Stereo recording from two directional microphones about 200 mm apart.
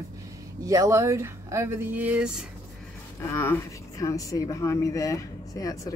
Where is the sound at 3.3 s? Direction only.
10° left (ahead or behind).